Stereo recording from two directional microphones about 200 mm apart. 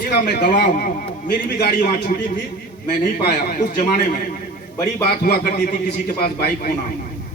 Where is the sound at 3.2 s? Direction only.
55° left (ahead or behind).